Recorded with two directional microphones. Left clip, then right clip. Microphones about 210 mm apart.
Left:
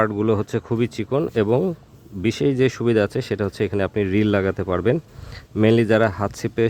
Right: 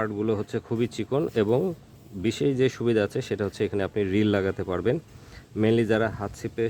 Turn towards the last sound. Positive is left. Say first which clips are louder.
# left 7 dB
turn(degrees=20)  # may be behind; listen again after turning